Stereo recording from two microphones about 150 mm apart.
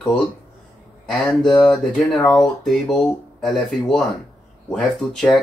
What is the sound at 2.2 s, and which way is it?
Speech, 30° left (ahead or behind).